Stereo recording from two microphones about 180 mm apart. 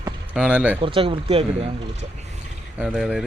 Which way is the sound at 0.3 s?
5° right (ahead or behind).